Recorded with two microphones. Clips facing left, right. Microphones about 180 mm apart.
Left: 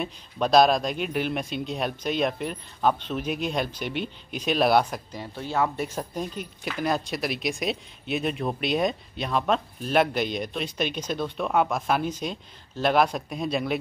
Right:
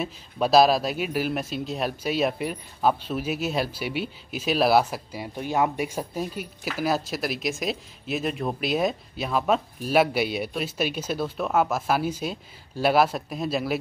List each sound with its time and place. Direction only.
0.0 s speech: 5° right (ahead or behind)